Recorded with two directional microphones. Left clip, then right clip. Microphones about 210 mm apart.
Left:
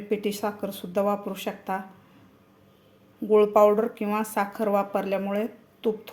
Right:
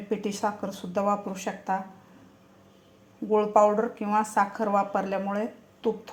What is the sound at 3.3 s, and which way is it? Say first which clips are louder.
Speech: left 3 dB; 15° left (ahead or behind).